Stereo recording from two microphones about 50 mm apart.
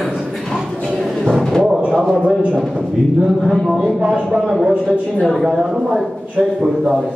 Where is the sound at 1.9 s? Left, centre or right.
Centre.